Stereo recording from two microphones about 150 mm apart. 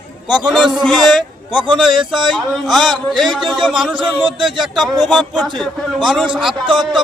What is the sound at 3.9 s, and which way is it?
Speech, 35° right (ahead or behind).